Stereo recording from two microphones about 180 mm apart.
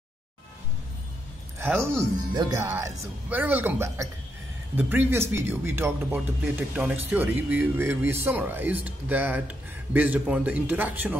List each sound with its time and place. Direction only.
1.6 s speech: 15° right (ahead or behind)